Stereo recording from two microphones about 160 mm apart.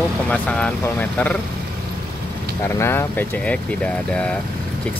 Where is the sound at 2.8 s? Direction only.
15° left (ahead or behind).